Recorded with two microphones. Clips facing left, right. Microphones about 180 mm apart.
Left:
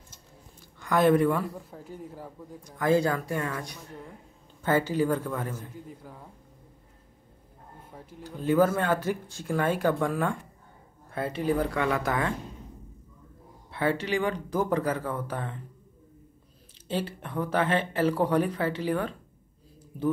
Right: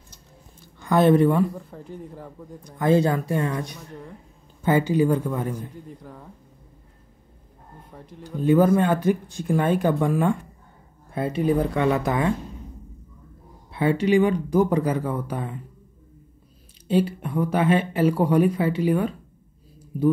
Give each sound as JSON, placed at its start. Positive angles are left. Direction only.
{"t": 0.7, "sound": "speech", "side_deg": -25}
{"t": 1.6, "sound": "speech", "side_deg": 5}
{"t": 2.6, "sound": "speech", "side_deg": -25}
{"t": 6.0, "sound": "speech", "side_deg": 5}
{"t": 7.9, "sound": "speech", "side_deg": 5}
{"t": 8.4, "sound": "speech", "side_deg": -15}
{"t": 13.7, "sound": "speech", "side_deg": -15}
{"t": 16.8, "sound": "speech", "side_deg": -15}